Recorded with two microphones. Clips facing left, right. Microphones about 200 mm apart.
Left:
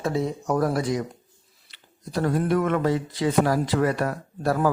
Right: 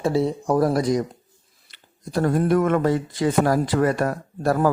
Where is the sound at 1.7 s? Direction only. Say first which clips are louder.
Right 3 dB; 50° right (ahead or behind).